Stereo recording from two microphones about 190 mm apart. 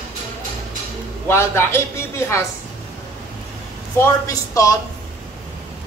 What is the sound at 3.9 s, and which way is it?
Speech, 15° left (ahead or behind).